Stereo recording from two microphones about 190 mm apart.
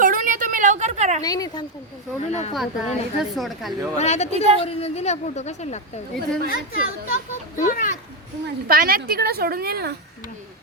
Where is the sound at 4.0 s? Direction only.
35° left (ahead or behind).